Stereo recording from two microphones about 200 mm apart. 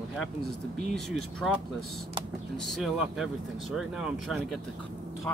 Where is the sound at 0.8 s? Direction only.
Centre (ahead or behind).